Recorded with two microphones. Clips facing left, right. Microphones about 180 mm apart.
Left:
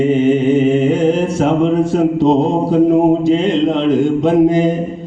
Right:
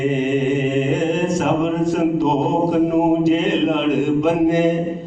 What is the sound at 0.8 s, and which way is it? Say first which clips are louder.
Mantra: left 6 dB; 30° left (ahead or behind).